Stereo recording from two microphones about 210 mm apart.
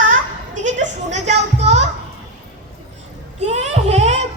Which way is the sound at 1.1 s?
30° right (ahead or behind).